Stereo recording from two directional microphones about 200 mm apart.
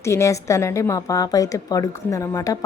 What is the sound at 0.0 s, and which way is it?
A woman's voice, 15° left (ahead or behind).